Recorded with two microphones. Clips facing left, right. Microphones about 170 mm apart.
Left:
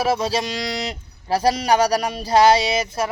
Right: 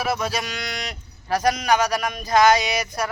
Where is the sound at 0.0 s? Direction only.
30° left (ahead or behind).